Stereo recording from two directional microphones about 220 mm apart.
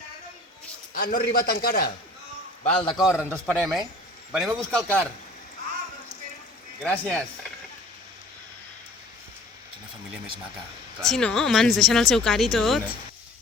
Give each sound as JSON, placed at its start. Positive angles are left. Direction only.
{"t": 0.9, "sound": "a man's voice", "side_deg": 40}
{"t": 2.6, "sound": "a man's voice", "side_deg": 20}
{"t": 3.2, "sound": "a man's voice", "side_deg": -5}
{"t": 4.8, "sound": "a man's voice", "side_deg": -10}
{"t": 6.8, "sound": "speech", "side_deg": 5}
{"t": 11.0, "sound": "speech", "side_deg": 5}